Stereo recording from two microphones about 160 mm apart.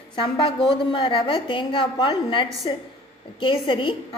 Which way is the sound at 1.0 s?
35° left (ahead or behind).